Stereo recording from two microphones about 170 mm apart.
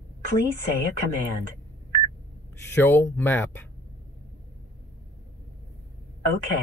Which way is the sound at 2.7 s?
15° left (ahead or behind).